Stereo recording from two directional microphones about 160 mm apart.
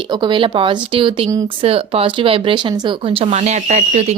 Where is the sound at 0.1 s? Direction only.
30° right (ahead or behind).